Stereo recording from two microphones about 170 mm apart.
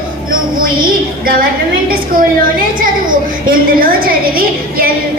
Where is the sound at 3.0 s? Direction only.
60° right (ahead or behind).